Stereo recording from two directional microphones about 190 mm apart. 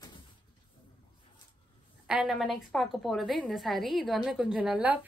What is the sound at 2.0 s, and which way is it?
A woman's voice, 5° right (ahead or behind).